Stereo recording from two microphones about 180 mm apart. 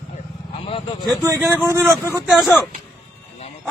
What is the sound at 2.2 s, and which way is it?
Speech, centre (ahead or behind).